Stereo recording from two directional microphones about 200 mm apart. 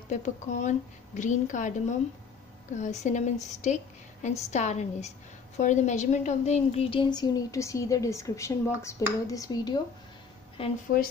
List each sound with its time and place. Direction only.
0.1 s a woman's voice: 35° left (ahead or behind)